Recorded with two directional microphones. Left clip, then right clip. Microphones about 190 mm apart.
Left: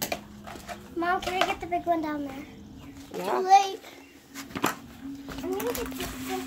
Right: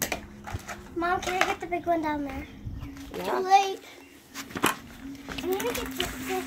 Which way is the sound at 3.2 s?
5° left (ahead or behind).